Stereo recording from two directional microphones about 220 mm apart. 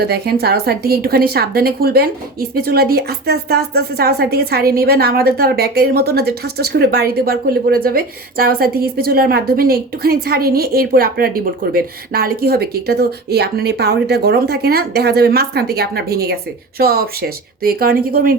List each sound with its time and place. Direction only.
0.0 s a woman's voice: 45° right (ahead or behind)